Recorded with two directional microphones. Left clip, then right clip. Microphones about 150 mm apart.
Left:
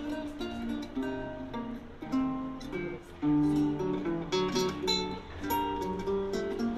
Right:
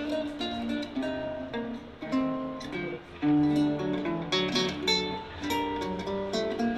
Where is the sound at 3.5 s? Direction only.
30° right (ahead or behind).